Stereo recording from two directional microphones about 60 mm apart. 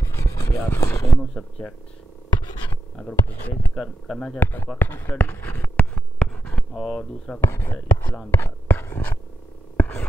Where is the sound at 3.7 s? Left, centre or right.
Centre.